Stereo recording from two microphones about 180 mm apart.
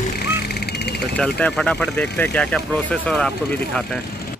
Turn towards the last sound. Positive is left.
turn(degrees=5)  # may be behind; listen again after turning